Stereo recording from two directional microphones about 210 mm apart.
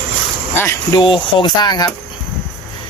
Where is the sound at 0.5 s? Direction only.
10° left (ahead or behind).